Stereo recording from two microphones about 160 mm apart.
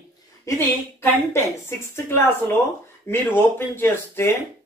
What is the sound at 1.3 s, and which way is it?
A woman's voice, 15° left (ahead or behind).